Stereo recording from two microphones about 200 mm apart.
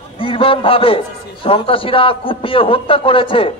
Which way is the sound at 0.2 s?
25° left (ahead or behind).